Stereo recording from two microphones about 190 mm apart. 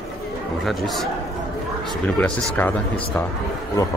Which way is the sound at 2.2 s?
10° left (ahead or behind).